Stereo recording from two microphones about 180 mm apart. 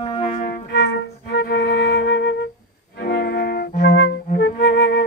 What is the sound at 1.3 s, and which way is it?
Flute, 75° left (ahead or behind).